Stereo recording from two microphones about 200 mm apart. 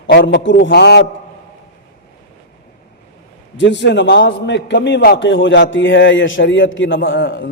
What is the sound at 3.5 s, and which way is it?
A man's voice, 65° left (ahead or behind).